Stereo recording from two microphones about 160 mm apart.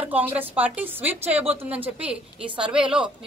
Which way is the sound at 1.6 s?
10° right (ahead or behind).